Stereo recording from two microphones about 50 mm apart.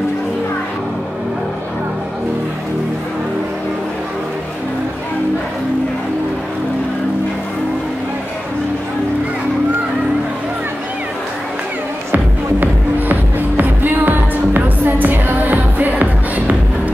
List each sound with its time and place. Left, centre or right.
13.1 s music: right